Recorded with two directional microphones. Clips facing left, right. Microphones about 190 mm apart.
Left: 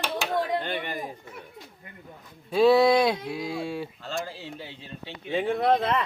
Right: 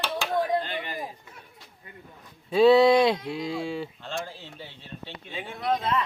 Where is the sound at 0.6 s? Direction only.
55° left (ahead or behind).